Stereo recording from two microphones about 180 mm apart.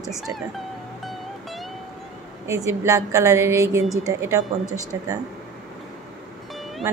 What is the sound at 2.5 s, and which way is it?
A woman's voice, 15° right (ahead or behind).